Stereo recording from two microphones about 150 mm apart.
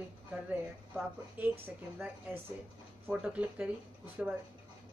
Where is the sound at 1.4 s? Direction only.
10° right (ahead or behind).